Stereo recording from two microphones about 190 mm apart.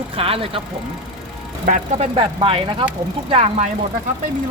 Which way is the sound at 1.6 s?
45° right (ahead or behind).